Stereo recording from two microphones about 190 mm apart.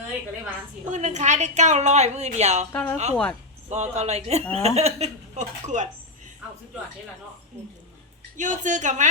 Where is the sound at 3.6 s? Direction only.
35° right (ahead or behind).